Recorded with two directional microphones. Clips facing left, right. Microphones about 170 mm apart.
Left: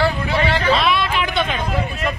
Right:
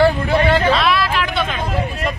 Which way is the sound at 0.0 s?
50° right (ahead or behind).